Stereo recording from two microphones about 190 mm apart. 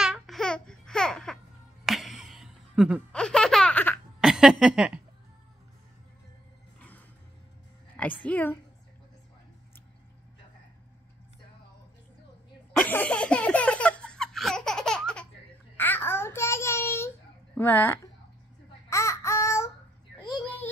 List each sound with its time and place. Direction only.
0.0 s babbling: centre (ahead or behind)
1.9 s laughter: centre (ahead or behind)
4.2 s a sound: 5° right (ahead or behind)
8.2 s a woman's voice: 10° left (ahead or behind)
12.7 s laughter: 10° left (ahead or behind)
15.8 s child singing: 10° left (ahead or behind)
17.6 s a woman's voice: 10° left (ahead or behind)
18.9 s babbling: 15° left (ahead or behind)